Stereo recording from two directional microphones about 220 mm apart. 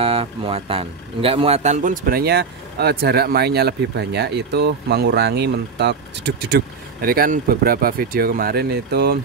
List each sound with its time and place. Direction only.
0.0 s a man's voice: 25° right (ahead or behind); by 9.2 s 45° right (ahead or behind)